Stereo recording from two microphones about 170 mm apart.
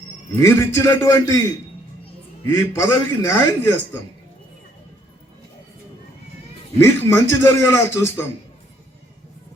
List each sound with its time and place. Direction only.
0.3 s speech: 15° left (ahead or behind)
2.5 s speech: 15° left (ahead or behind)
6.7 s speech: 15° left (ahead or behind)